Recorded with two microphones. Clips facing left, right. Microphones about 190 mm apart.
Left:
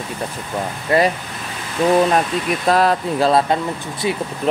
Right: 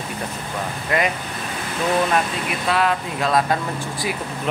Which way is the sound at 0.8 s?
35° left (ahead or behind).